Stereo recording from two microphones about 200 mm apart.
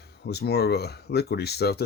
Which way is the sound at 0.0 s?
55° left (ahead or behind).